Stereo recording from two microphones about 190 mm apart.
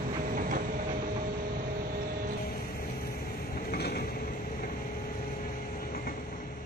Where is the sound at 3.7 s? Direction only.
55° left (ahead or behind).